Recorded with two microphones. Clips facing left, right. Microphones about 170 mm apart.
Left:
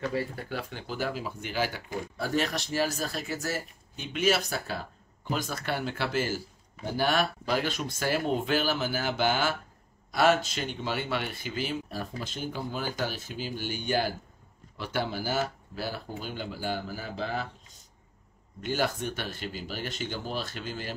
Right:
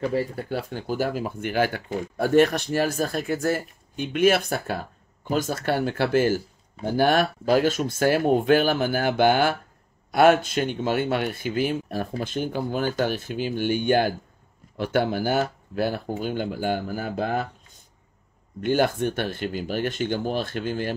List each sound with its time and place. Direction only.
0.1 s speech: 35° right (ahead or behind); by 17.5 s 55° right (ahead or behind)
18.6 s speech: 55° right (ahead or behind)